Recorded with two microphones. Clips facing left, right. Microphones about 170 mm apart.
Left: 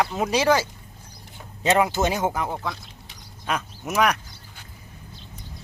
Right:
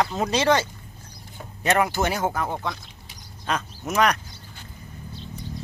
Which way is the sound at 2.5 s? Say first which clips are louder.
Right 1 dB; 5° left (ahead or behind).